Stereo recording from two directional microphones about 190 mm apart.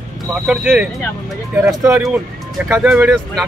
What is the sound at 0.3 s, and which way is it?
Speech, 5° right (ahead or behind).